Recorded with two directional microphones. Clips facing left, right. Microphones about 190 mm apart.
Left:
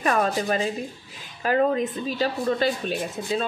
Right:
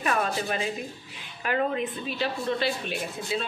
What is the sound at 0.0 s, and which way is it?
Speech, 40° left (ahead or behind).